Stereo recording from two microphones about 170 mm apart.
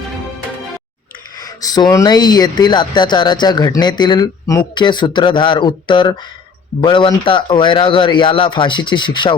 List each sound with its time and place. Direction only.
1.4 s speech: 20° left (ahead or behind)